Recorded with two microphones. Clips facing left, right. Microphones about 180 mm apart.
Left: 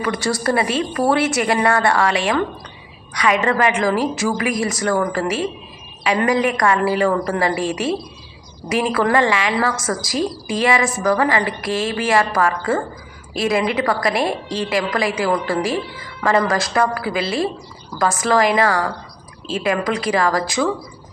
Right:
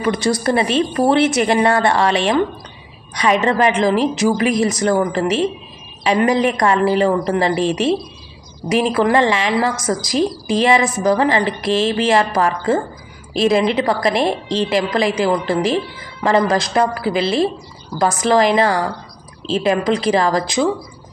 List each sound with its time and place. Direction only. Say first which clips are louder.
0.0 s a woman's voice: right 3 dB; 20° right (ahead or behind)